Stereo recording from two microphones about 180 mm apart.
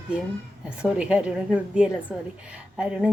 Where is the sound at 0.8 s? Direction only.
5° right (ahead or behind).